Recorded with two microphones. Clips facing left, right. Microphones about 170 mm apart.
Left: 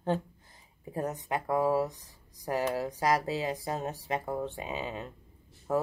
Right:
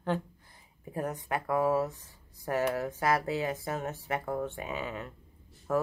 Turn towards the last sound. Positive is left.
turn(degrees=20)  # may be behind; listen again after turning